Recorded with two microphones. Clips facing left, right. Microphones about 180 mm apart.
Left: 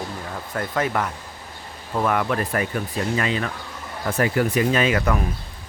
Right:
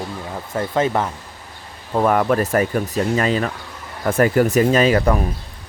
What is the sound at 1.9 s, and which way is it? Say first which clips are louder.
Speech: right 5 dB; 35° right (ahead or behind).